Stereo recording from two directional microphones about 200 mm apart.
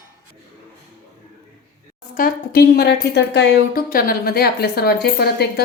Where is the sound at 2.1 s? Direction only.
50° left (ahead or behind).